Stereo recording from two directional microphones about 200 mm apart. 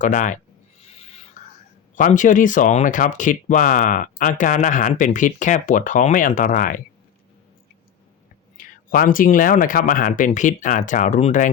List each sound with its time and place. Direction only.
0.0 s speech: 40° left (ahead or behind)
0.9 s a sound: 30° left (ahead or behind)
2.0 s speech: 40° left (ahead or behind)
8.5 s speech: 45° left (ahead or behind)